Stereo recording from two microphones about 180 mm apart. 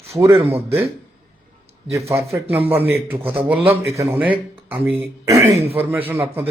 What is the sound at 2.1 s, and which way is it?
Speech, 15° right (ahead or behind).